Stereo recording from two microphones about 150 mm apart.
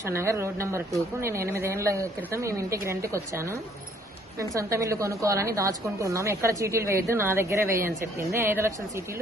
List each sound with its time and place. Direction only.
0.0 s a woman's voice: 20° right (ahead or behind)